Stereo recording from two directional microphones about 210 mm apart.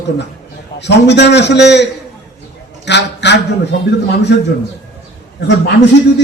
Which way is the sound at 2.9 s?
55° left (ahead or behind).